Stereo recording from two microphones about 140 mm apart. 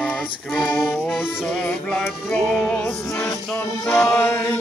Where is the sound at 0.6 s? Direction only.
10° left (ahead or behind).